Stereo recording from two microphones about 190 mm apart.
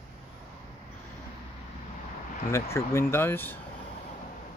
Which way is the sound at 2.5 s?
15° left (ahead or behind).